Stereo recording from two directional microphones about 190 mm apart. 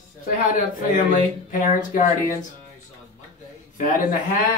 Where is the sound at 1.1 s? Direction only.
45° left (ahead or behind).